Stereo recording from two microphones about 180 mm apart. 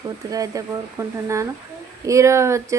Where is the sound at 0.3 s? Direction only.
20° right (ahead or behind).